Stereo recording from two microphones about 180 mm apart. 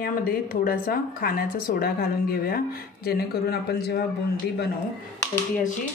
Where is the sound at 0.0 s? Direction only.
55° left (ahead or behind).